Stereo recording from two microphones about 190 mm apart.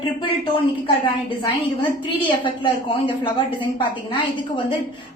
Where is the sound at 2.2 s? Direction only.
25° left (ahead or behind).